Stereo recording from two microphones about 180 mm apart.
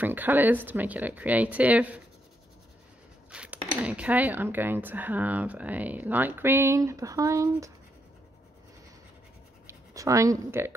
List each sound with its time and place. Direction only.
0.0 s speech: 10° right (ahead or behind)
3.3 s speech: 5° right (ahead or behind)
9.7 s speech: 15° right (ahead or behind)